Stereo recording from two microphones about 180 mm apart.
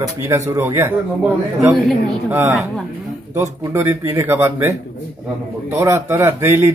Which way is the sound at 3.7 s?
15° right (ahead or behind).